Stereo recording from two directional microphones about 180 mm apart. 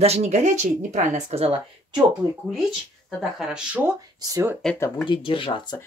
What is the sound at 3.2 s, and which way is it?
Speech, 5° right (ahead or behind).